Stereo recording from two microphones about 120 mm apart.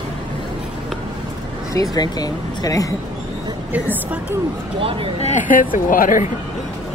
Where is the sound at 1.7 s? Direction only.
30° left (ahead or behind).